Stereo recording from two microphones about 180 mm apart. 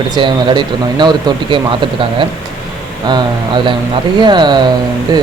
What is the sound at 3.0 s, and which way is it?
Speech, 25° right (ahead or behind).